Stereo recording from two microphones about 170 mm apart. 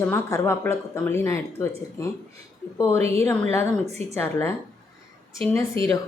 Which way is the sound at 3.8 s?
40° right (ahead or behind).